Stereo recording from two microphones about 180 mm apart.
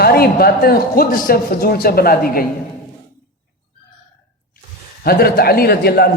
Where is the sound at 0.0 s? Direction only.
60° left (ahead or behind).